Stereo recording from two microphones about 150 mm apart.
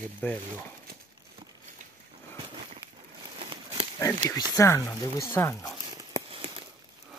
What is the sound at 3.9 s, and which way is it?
Speech, 20° left (ahead or behind).